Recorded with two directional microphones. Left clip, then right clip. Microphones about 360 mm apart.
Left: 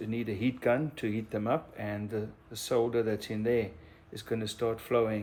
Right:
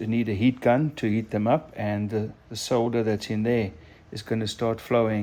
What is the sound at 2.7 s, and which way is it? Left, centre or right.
Speech, centre.